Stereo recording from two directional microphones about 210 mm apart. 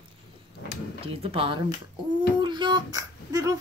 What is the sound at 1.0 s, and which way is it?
Speech, 25° right (ahead or behind).